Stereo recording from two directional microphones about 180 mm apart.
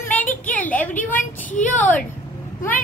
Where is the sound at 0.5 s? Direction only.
10° left (ahead or behind).